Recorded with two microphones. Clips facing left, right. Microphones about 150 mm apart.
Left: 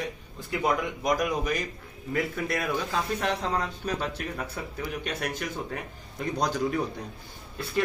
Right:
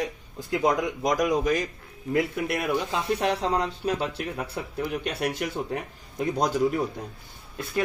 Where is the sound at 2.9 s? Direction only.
35° right (ahead or behind).